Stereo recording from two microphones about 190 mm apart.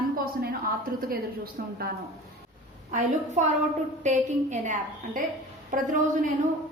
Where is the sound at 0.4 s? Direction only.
50° right (ahead or behind).